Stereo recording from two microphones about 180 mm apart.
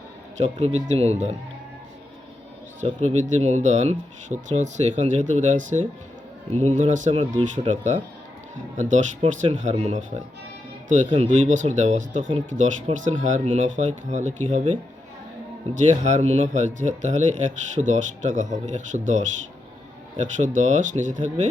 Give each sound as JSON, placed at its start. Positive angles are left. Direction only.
{"t": 0.3, "sound": "speech", "side_deg": -40}
{"t": 2.8, "sound": "speech", "side_deg": -40}